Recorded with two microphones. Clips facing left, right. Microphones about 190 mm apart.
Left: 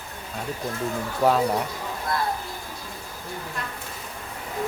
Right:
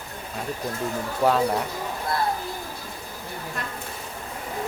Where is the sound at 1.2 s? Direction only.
5° left (ahead or behind).